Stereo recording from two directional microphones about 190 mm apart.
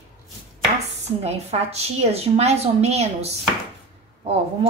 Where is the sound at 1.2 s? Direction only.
35° right (ahead or behind).